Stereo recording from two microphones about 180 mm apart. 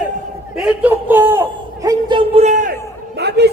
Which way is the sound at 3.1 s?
65° right (ahead or behind).